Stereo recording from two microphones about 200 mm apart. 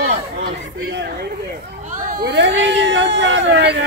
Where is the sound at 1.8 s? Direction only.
45° right (ahead or behind).